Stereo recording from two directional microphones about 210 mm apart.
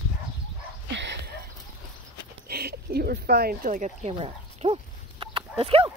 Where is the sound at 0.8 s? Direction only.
55° right (ahead or behind).